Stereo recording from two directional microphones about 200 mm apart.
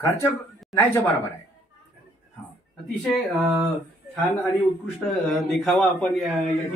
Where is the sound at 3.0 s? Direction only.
Centre (ahead or behind).